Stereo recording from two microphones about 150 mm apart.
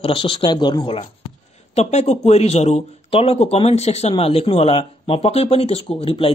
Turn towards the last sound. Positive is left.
turn(degrees=40)  # may be behind; listen again after turning